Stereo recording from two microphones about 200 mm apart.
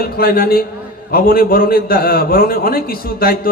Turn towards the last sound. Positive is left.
turn(degrees=50)  # may be behind; listen again after turning